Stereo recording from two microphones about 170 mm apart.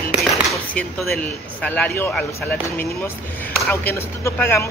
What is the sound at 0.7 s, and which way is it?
Speech, 10° left (ahead or behind).